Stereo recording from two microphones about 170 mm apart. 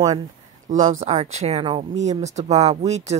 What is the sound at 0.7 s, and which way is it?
A woman's voice, 50° right (ahead or behind).